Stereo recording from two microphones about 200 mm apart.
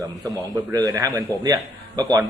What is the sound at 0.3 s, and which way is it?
A man's voice, 20° right (ahead or behind).